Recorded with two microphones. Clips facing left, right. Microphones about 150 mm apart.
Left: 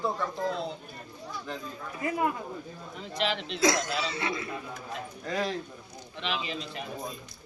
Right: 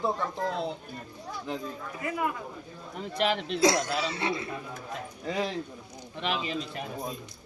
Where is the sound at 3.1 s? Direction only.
50° right (ahead or behind).